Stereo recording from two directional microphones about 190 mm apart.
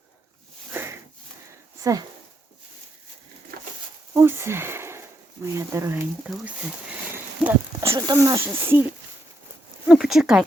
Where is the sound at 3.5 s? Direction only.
55° right (ahead or behind).